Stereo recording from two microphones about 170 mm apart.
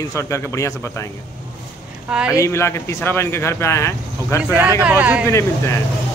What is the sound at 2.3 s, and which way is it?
Speech, 15° left (ahead or behind).